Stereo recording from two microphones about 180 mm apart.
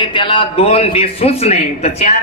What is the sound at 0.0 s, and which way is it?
Speech, 25° left (ahead or behind).